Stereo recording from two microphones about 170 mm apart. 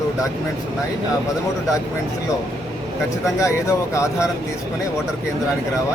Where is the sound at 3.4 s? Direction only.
15° left (ahead or behind).